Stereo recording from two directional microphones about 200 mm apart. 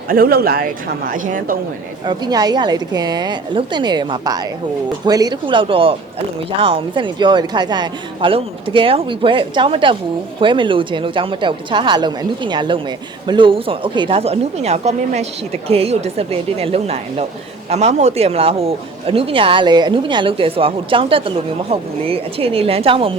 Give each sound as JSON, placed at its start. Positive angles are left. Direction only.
{"t": 0.1, "sound": "speech", "side_deg": -50}
{"t": 2.0, "sound": "speech", "side_deg": -20}